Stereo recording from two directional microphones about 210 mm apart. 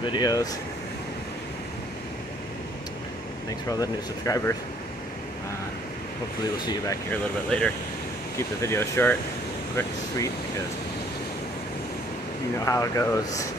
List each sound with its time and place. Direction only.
0.0 s speech: 20° left (ahead or behind)
3.8 s speech: 15° left (ahead or behind)
6.6 s speech: 15° left (ahead or behind)
7.4 s speech: 5° left (ahead or behind)
12.6 s speech: 15° left (ahead or behind)